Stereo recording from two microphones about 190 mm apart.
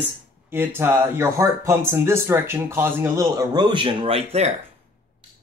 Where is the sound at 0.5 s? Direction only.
10° right (ahead or behind); by 4.5 s 35° right (ahead or behind).